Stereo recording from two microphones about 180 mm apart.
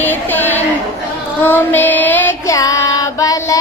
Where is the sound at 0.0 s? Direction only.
10° left (ahead or behind).